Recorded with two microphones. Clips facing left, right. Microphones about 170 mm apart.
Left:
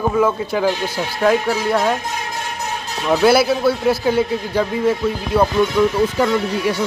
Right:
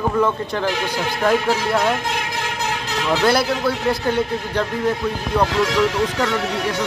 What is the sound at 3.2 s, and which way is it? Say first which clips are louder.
A man's voice: left 5 dB; 5° left (ahead or behind).